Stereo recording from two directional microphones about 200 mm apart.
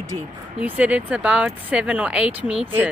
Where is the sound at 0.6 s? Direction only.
5° right (ahead or behind).